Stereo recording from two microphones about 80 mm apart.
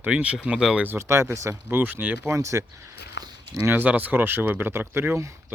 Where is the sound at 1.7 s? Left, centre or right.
Right.